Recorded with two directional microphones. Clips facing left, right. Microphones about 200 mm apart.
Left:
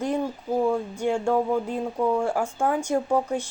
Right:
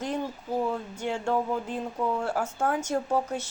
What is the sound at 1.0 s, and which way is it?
Speech, 10° left (ahead or behind).